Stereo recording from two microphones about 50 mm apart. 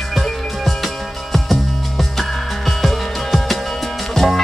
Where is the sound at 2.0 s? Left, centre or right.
Centre.